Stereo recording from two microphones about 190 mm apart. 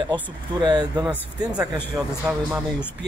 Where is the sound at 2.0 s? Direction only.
10° right (ahead or behind).